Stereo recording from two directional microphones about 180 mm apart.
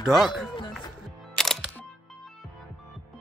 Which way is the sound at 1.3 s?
Centre (ahead or behind).